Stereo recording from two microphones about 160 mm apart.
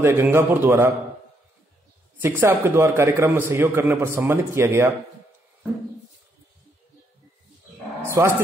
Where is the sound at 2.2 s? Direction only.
15° right (ahead or behind).